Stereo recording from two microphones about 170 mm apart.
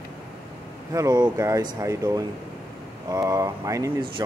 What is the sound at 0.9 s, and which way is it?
Speech, 20° right (ahead or behind).